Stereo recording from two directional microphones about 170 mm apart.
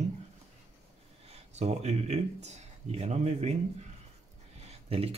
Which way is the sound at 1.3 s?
40° right (ahead or behind).